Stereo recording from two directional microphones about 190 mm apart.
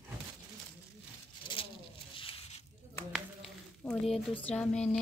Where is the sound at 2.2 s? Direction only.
30° left (ahead or behind).